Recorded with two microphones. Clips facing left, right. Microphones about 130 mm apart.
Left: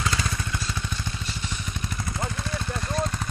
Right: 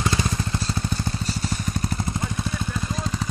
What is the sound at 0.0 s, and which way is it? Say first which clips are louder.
Vehicle: right 4 dB; 25° right (ahead or behind).